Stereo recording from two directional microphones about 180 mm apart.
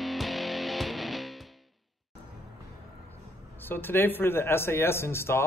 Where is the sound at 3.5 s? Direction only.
10° left (ahead or behind).